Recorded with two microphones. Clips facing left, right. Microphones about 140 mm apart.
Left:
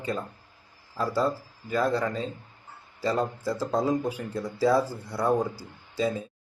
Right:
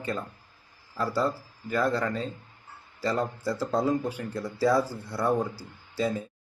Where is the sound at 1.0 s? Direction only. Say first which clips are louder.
Left 1 dB; 20° left (ahead or behind).